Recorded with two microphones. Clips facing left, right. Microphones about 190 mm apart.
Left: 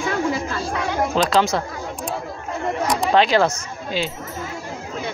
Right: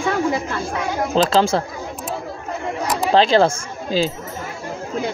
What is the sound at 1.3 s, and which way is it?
Speech, 30° right (ahead or behind).